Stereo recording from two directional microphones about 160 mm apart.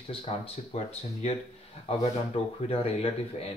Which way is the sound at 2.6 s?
35° left (ahead or behind).